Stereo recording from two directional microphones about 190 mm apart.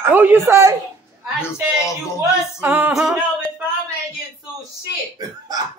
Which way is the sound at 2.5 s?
10° right (ahead or behind).